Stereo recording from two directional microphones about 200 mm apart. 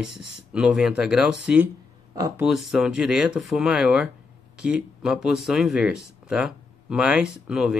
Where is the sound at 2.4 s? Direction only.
Centre (ahead or behind).